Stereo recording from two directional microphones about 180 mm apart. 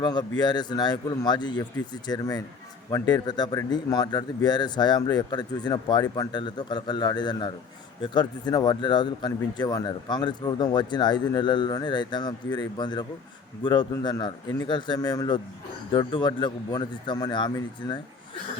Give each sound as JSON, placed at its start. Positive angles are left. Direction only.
{"t": 0.0, "sound": "speech", "side_deg": 25}